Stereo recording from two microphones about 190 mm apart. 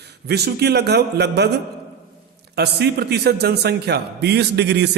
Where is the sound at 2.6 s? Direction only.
60° right (ahead or behind).